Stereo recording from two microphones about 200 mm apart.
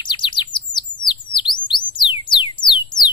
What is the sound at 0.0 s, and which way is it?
Bird, 25° left (ahead or behind).